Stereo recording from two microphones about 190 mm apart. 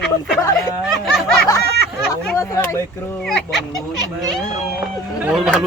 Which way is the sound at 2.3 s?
15° left (ahead or behind).